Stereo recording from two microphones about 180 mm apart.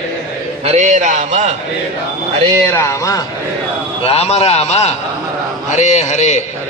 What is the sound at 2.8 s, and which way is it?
Speech, 15° left (ahead or behind).